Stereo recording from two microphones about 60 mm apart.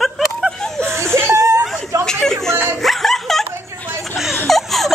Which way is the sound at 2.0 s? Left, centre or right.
Centre.